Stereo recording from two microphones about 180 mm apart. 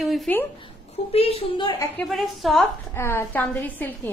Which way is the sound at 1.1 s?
35° left (ahead or behind).